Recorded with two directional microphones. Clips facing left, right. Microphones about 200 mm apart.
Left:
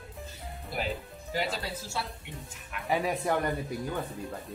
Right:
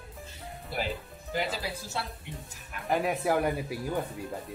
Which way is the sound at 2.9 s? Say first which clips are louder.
Right 1 dB; centre (ahead or behind).